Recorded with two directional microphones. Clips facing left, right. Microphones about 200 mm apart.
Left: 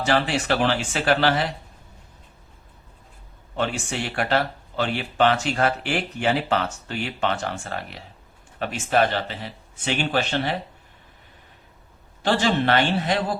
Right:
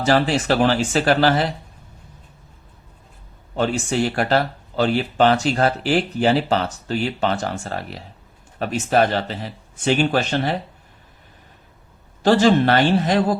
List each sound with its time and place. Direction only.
0.0 s speech: 40° right (ahead or behind)
3.5 s a man's voice: 40° right (ahead or behind)
12.2 s speech: 40° right (ahead or behind)